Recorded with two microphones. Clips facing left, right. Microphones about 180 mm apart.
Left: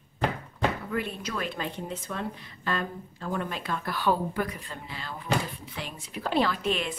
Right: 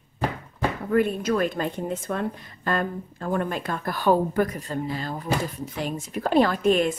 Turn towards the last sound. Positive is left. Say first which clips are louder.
# right 8 dB
turn(degrees=-45)  # may be behind; listen again after turning